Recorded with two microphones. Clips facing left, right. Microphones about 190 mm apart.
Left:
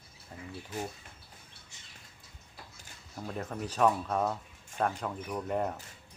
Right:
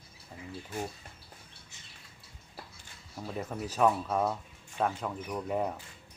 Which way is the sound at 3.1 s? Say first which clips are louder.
Right 1 dB; 5° right (ahead or behind).